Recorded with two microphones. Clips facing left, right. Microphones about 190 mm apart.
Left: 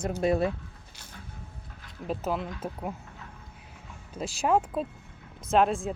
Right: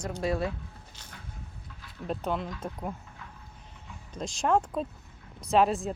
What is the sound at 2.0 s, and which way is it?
Speech, 5° left (ahead or behind).